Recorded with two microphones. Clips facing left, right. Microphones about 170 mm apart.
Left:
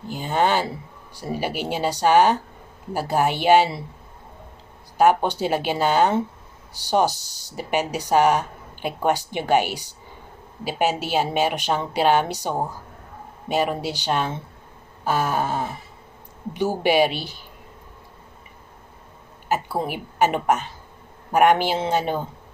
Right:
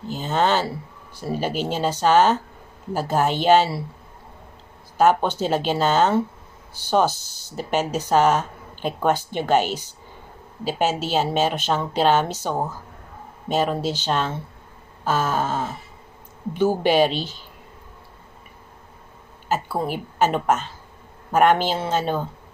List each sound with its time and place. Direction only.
0.1 s speech: 10° left (ahead or behind)
4.9 s speech: 15° left (ahead or behind)
19.8 s speech: 15° left (ahead or behind)